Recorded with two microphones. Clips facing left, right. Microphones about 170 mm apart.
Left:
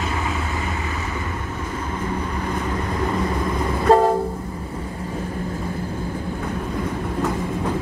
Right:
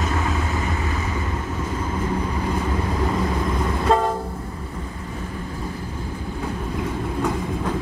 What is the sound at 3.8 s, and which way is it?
Train, 30° left (ahead or behind).